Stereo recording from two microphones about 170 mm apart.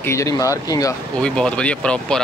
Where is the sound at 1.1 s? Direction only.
5° left (ahead or behind).